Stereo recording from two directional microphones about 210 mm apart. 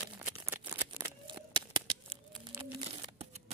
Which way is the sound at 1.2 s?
25° right (ahead or behind).